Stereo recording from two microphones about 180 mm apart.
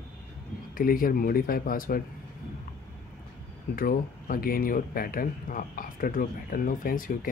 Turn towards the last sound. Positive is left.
turn(degrees=50)  # may be behind; listen again after turning